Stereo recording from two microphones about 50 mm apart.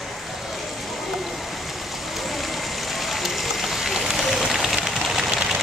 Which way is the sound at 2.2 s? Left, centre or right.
Centre.